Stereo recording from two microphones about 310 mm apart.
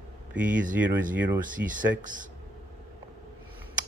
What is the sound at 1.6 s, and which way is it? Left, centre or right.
Speech, right.